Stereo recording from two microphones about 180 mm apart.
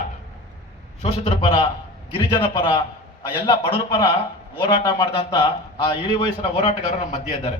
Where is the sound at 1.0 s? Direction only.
30° left (ahead or behind).